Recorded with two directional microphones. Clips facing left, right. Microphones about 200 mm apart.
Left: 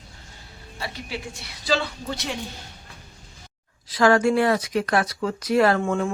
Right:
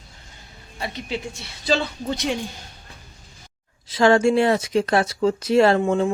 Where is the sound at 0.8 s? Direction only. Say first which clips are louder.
Right 4 dB; 20° right (ahead or behind).